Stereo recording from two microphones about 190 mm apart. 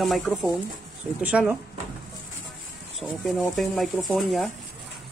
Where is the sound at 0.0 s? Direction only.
Centre (ahead or behind).